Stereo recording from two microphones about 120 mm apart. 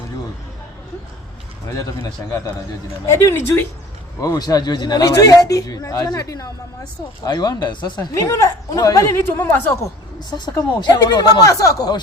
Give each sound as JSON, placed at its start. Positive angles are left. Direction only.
{"t": 1.7, "sound": "speech", "side_deg": 30}
{"t": 4.2, "sound": "speech", "side_deg": 35}
{"t": 9.2, "sound": "speech", "side_deg": 15}
{"t": 10.2, "sound": "speech", "side_deg": 40}